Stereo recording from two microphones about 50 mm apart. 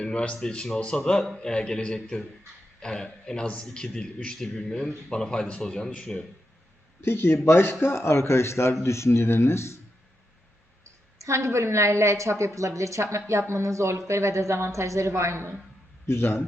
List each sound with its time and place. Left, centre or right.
0.0 s speech: left
7.0 s speech: left
11.2 s a woman's voice: right
16.0 s speech: left